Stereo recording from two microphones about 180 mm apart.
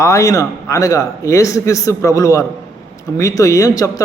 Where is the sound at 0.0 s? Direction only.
15° left (ahead or behind).